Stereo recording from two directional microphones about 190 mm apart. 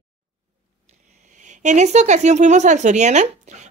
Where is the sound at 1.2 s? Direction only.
40° right (ahead or behind).